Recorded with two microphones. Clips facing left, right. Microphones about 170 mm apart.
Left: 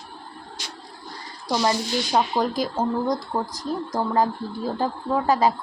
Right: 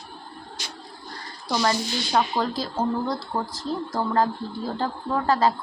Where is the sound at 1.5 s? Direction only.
15° left (ahead or behind).